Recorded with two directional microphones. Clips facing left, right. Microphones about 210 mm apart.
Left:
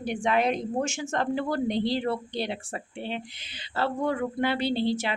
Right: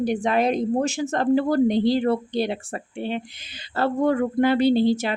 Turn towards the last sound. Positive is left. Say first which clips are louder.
# right 7 dB
turn(degrees=-45)  # may be behind; listen again after turning